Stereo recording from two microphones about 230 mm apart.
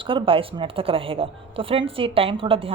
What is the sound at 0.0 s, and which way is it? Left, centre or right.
A woman's voice, right.